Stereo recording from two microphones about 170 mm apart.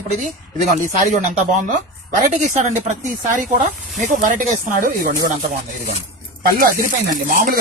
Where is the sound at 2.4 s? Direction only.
45° right (ahead or behind).